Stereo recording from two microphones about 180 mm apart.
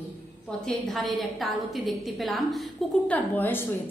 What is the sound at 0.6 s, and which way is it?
A woman's voice, centre (ahead or behind).